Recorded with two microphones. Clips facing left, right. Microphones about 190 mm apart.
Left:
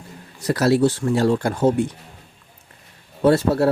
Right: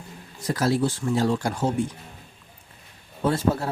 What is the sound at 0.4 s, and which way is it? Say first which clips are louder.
Speech: left 6 dB; 70° left (ahead or behind).